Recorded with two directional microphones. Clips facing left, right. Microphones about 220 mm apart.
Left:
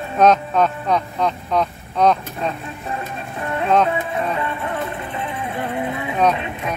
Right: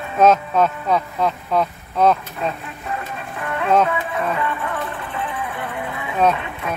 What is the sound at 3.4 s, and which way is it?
Music, 25° left (ahead or behind).